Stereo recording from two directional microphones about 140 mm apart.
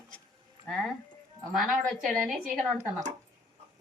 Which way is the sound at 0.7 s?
Centre (ahead or behind).